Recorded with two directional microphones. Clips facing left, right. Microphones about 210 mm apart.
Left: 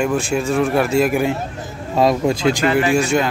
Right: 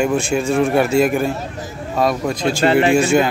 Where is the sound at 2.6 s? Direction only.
30° right (ahead or behind).